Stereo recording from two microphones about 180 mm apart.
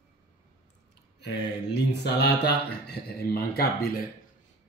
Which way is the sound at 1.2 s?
70° left (ahead or behind).